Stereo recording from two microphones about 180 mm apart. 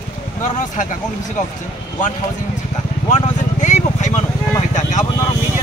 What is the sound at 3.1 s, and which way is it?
Vehicle, 40° left (ahead or behind).